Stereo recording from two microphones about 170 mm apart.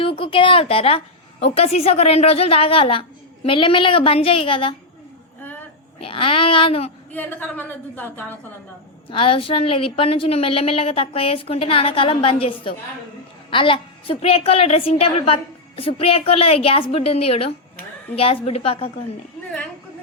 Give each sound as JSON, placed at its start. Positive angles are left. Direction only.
{"t": 0.0, "sound": "a woman's voice", "side_deg": 30}
{"t": 5.4, "sound": "a sound", "side_deg": 10}
{"t": 6.0, "sound": "a woman's voice", "side_deg": 30}
{"t": 7.1, "sound": "a woman's voice", "side_deg": 10}
{"t": 9.0, "sound": "a woman's voice", "side_deg": 30}